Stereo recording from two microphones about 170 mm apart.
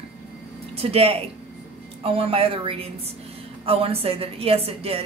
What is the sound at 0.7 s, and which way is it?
Speech, 35° right (ahead or behind).